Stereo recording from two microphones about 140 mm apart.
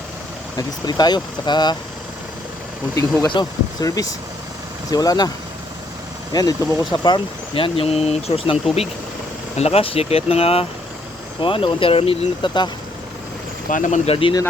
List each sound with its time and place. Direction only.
0.5 s speech: 30° left (ahead or behind)
2.9 s speech: 20° left (ahead or behind)
6.3 s speech: 25° left (ahead or behind)
13.7 s speech: 65° left (ahead or behind); by 14.3 s 40° left (ahead or behind)